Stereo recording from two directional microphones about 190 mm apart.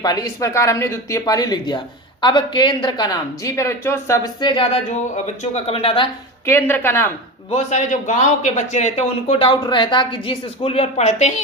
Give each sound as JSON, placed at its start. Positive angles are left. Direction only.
{"t": 0.0, "sound": "speech", "side_deg": 20}
{"t": 6.4, "sound": "a woman's voice", "side_deg": 10}
{"t": 7.5, "sound": "a man's voice", "side_deg": 40}